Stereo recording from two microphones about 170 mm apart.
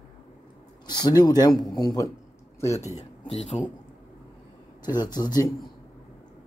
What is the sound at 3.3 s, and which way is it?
Speech, 40° left (ahead or behind).